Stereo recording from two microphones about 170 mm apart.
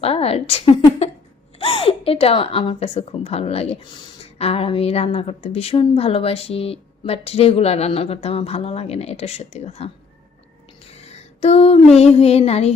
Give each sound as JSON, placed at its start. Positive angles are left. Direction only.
{"t": 0.0, "sound": "speech", "side_deg": 35}
{"t": 10.9, "sound": "a sound", "side_deg": 40}
{"t": 11.9, "sound": "speech", "side_deg": 40}